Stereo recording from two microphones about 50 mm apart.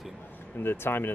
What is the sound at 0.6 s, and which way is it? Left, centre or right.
Speech, left.